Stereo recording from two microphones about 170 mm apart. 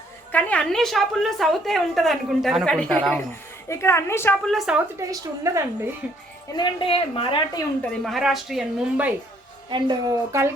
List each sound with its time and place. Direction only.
0.3 s a woman's voice: 10° left (ahead or behind)
3.7 s a woman's voice: 15° left (ahead or behind)
4.5 s a woman's voice: 5° right (ahead or behind)
4.9 s a woman's voice: 20° right (ahead or behind)
6.6 s speech: 30° left (ahead or behind)
8.0 s a woman's voice: centre (ahead or behind)
9.6 s speech: 25° right (ahead or behind)